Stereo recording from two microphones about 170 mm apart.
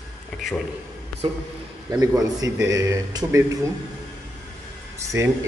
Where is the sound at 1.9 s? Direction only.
20° right (ahead or behind).